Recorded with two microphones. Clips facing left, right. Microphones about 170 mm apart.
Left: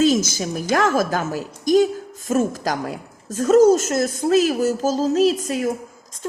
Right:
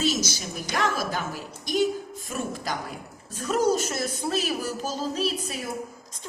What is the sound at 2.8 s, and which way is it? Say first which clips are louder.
Speech: left 8 dB; 90° left.